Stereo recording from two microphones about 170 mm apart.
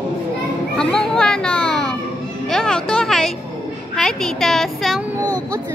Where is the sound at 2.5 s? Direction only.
5° left (ahead or behind).